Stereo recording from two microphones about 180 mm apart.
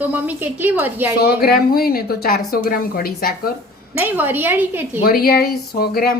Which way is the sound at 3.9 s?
10° right (ahead or behind).